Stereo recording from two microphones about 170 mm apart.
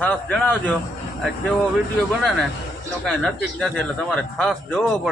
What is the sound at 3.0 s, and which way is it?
A man's voice, centre (ahead or behind).